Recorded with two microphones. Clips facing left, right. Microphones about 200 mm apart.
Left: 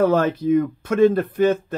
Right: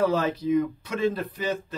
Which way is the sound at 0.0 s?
55° left (ahead or behind).